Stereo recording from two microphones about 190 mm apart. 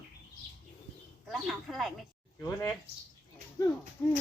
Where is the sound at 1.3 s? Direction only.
Centre (ahead or behind).